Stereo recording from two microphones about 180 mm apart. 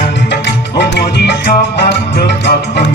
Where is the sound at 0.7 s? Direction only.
70° left (ahead or behind).